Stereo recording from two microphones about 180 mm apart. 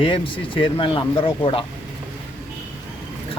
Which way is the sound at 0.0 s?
30° left (ahead or behind).